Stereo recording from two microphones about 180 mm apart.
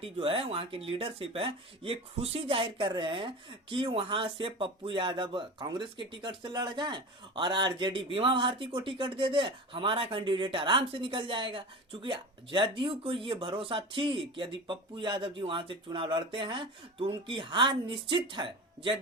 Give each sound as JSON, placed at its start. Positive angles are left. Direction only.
{"t": 0.0, "sound": "speech", "side_deg": -30}